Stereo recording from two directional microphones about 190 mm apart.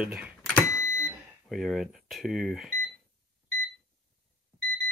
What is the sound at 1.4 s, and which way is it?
Speech, centre (ahead or behind).